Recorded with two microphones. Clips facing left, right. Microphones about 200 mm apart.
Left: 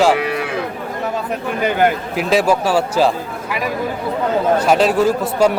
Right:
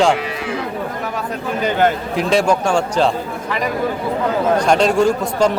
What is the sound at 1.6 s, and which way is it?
Speech, 5° left (ahead or behind).